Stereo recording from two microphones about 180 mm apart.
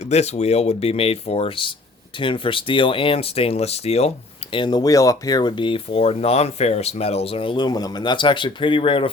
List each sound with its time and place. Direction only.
0.0 s speech: 35° left (ahead or behind)
4.5 s speech: 25° left (ahead or behind)